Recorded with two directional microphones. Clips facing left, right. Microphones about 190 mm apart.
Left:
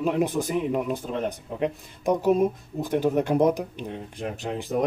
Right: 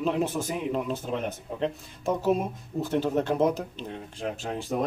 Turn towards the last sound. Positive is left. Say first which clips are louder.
# left 1 dB
turn(degrees=15)  # may be behind; listen again after turning